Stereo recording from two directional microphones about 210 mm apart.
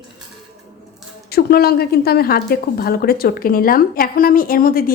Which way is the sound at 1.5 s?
50° left (ahead or behind).